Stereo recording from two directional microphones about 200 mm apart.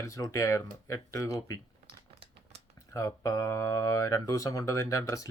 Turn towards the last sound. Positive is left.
turn(degrees=15)  # may be behind; listen again after turning